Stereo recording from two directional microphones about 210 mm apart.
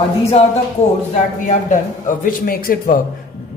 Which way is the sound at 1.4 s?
35° left (ahead or behind).